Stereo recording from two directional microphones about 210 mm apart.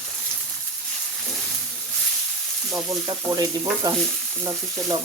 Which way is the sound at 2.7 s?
15° right (ahead or behind).